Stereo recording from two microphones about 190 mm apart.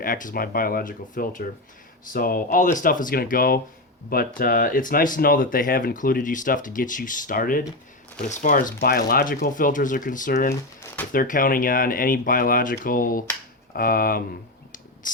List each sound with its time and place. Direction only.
0.0 s speech: 45° left (ahead or behind)
15.0 s mechanisms: 45° left (ahead or behind)